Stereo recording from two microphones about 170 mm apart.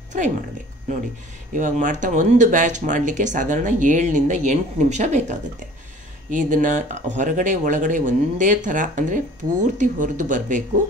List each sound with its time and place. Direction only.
1.5 s speech: 50° right (ahead or behind)